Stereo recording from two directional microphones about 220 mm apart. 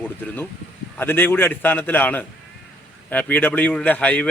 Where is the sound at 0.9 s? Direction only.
10° left (ahead or behind).